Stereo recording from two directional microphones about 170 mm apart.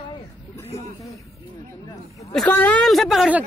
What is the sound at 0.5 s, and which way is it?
Speech, 15° left (ahead or behind).